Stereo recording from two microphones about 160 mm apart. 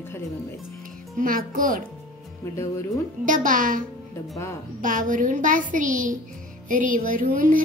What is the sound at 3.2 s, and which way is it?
Music, 55° right (ahead or behind).